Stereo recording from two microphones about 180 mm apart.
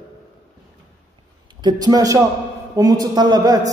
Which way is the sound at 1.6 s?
25° right (ahead or behind).